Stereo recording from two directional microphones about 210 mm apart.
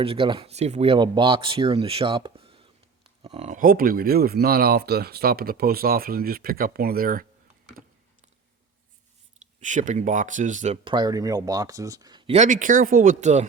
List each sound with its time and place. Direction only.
0.0 s speech: 25° right (ahead or behind); by 7.3 s 45° right (ahead or behind)
9.6 s speech: 35° right (ahead or behind)
10.9 s speech: 20° right (ahead or behind); by 13.5 s 35° right (ahead or behind)